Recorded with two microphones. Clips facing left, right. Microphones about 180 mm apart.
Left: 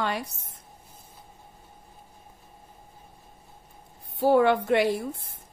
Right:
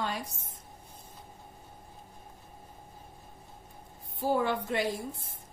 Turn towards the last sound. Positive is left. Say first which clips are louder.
# left 8 dB
turn(degrees=70)  # may be behind; listen again after turning